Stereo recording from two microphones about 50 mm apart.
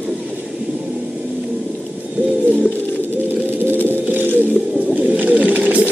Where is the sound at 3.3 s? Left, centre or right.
Right.